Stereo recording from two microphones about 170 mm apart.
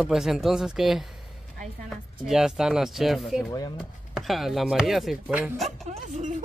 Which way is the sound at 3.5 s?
20° left (ahead or behind).